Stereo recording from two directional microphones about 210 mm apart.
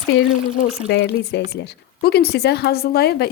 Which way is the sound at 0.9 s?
55° left (ahead or behind).